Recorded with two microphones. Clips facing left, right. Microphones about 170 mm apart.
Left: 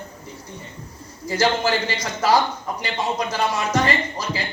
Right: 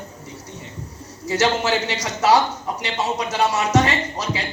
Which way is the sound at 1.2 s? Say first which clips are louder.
Even; 75° right (ahead or behind).